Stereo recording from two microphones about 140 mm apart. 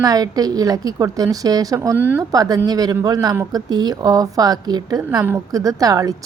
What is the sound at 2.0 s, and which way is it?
Speech, 15° right (ahead or behind).